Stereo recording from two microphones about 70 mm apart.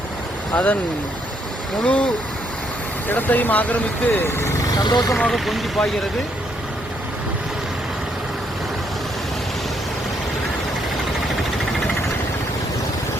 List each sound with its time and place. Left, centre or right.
0.5 s speech: left
1.8 s speech: centre
3.1 s speech: left
4.8 s speech: left
5.1 s speech: centre